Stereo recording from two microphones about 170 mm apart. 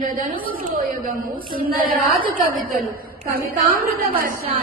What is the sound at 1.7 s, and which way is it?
A woman's voice, 55° right (ahead or behind).